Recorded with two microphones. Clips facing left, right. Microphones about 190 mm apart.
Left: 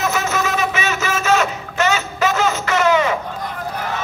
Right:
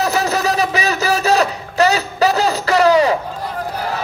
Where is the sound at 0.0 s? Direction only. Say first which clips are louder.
Right 3 dB; 35° right (ahead or behind).